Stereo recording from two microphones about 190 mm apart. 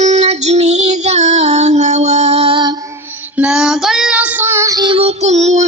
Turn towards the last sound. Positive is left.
turn(degrees=-35)  # may be behind; listen again after turning